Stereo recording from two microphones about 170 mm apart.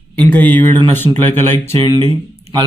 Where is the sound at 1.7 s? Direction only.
30° right (ahead or behind).